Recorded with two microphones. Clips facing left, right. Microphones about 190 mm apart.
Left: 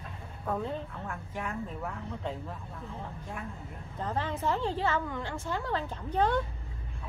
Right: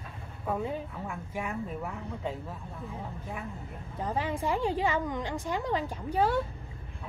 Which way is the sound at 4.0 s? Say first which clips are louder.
Right 1 dB; 10° right (ahead or behind).